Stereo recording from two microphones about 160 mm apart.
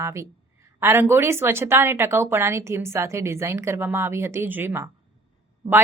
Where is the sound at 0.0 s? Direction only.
15° right (ahead or behind).